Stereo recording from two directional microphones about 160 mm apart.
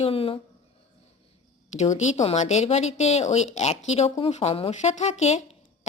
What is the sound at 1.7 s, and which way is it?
A woman's voice, 45° left (ahead or behind).